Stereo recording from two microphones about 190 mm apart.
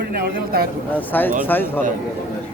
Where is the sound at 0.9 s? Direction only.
10° left (ahead or behind).